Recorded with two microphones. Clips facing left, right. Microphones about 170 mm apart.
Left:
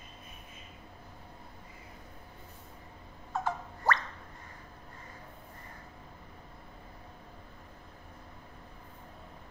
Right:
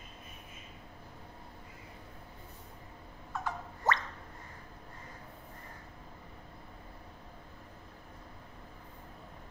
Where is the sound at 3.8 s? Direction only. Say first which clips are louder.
Left 1 dB; 20° right (ahead or behind).